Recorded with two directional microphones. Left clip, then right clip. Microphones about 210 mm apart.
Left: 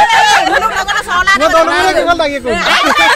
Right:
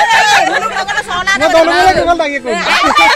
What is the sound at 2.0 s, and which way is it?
Speech, centre (ahead or behind).